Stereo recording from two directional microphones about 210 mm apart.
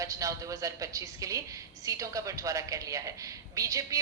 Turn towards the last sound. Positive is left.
turn(degrees=-15)  # may be behind; listen again after turning